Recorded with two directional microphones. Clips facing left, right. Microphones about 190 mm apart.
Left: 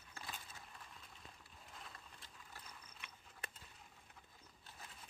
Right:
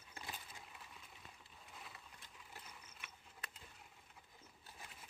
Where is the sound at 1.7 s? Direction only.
5° right (ahead or behind).